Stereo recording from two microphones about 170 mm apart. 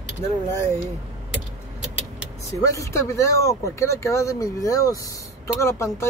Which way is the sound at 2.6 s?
20° left (ahead or behind).